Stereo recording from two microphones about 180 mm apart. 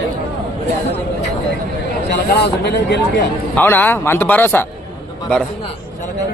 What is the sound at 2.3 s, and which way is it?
Speech, 65° left (ahead or behind).